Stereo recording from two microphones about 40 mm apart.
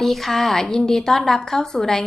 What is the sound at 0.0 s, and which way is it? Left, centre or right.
A woman's voice, centre.